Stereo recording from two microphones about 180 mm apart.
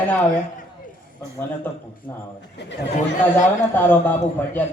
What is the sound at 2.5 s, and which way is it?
Speech, 75° left (ahead or behind).